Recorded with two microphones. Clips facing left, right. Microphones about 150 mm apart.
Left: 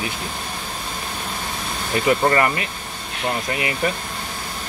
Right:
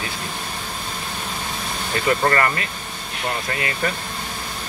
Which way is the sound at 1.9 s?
20° left (ahead or behind).